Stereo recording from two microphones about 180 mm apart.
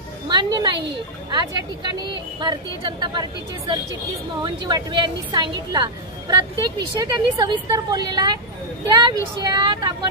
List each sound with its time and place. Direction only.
0.3 s a woman's voice: 25° right (ahead or behind)